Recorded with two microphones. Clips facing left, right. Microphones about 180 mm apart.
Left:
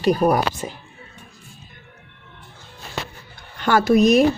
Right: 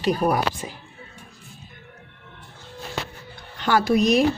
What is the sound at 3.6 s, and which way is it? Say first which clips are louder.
Speech: left 4 dB; 50° left (ahead or behind).